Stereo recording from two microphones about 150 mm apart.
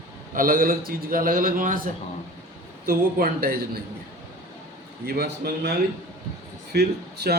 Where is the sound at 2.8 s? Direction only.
80° right.